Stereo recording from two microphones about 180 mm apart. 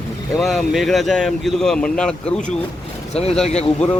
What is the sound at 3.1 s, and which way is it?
Speech, 35° left (ahead or behind).